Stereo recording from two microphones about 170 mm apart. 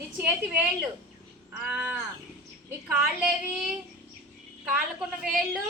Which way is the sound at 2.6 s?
5° right (ahead or behind).